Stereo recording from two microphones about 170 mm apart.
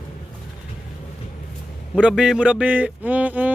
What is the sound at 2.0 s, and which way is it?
Speech, 5° right (ahead or behind).